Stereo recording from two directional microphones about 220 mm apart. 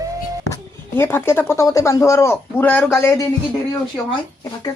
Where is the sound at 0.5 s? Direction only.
10° left (ahead or behind).